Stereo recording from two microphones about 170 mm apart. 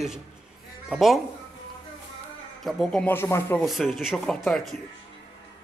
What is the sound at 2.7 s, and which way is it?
Speech, 5° left (ahead or behind).